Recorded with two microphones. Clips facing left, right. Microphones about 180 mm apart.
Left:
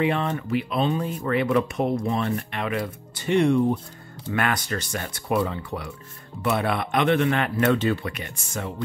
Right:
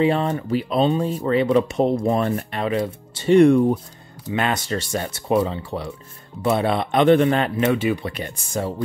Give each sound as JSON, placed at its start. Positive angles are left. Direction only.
{"t": 0.0, "sound": "speech", "side_deg": -30}
{"t": 3.3, "sound": "speech", "side_deg": -50}
{"t": 4.3, "sound": "speech", "side_deg": -25}
{"t": 7.7, "sound": "speech", "side_deg": -15}
{"t": 8.0, "sound": "speech", "side_deg": -35}